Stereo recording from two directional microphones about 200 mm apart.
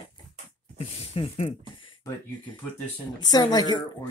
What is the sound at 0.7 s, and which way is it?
Speech, 30° left (ahead or behind).